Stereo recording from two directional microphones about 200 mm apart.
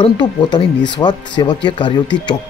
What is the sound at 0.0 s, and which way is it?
Speech, 25° left (ahead or behind).